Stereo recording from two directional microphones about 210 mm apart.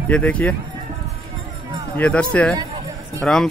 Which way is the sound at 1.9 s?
5° left (ahead or behind).